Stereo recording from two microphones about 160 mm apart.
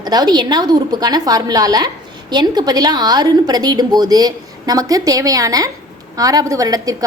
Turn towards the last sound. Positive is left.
turn(degrees=-20)  # may be behind; listen again after turning